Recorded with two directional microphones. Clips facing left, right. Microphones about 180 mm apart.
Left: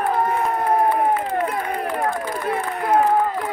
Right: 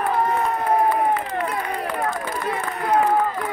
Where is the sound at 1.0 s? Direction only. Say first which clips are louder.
Left 2 dB; 50° left (ahead or behind).